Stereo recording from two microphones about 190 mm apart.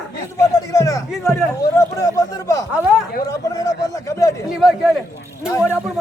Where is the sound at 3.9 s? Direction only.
15° left (ahead or behind).